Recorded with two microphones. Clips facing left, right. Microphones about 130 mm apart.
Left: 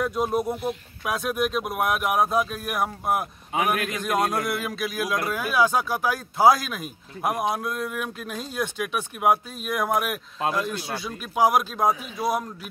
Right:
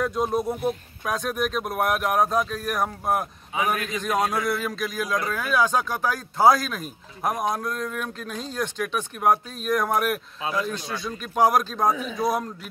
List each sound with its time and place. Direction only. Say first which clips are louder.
0.0 s speech: even; 5° left (ahead or behind)
3.5 s a man's voice: left 1 dB; 60° left (ahead or behind)
3.9 s speech: even; centre (ahead or behind)